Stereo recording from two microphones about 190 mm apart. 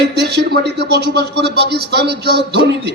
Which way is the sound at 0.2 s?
60° right (ahead or behind).